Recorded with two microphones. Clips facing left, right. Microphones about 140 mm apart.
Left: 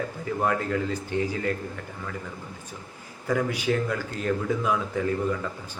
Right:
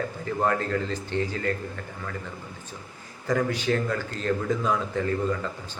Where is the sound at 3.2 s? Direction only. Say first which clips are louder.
Even; 10° left (ahead or behind).